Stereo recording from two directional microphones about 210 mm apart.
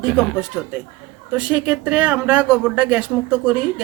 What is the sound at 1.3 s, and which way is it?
Speech, 5° right (ahead or behind).